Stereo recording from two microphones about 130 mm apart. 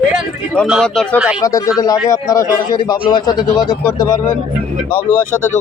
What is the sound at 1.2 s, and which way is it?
Speech, 5° right (ahead or behind).